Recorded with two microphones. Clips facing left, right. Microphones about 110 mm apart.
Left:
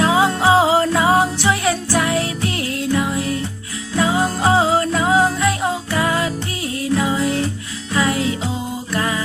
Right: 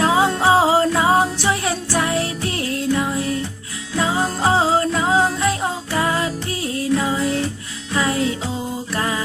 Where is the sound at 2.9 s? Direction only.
5° left (ahead or behind).